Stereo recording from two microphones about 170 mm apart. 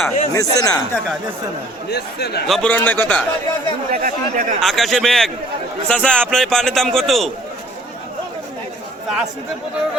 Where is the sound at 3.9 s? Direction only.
50° right (ahead or behind).